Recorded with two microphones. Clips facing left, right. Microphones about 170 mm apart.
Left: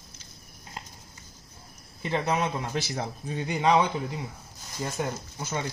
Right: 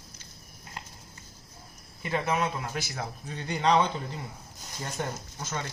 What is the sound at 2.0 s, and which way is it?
Speech, 20° left (ahead or behind).